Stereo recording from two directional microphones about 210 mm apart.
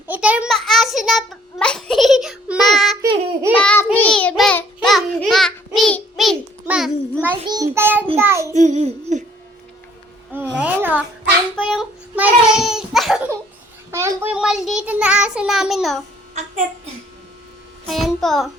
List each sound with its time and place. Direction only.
0.1 s a sound: 5° right (ahead or behind)
3.0 s babbling: 15° right (ahead or behind)
3.6 s child singing: 5° left (ahead or behind)
7.4 s child singing: 15° right (ahead or behind)
8.5 s music: 35° right (ahead or behind)
10.6 s babbling: 10° right (ahead or behind)
11.7 s child singing: 5° right (ahead or behind)
13.9 s child singing: 10° right (ahead or behind)
16.3 s a sound: 35° right (ahead or behind)
17.8 s music: centre (ahead or behind)